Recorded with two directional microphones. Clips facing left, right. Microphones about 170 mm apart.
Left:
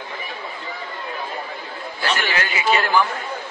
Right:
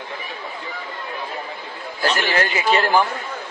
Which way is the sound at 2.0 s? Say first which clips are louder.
Right 3 dB; 40° right (ahead or behind).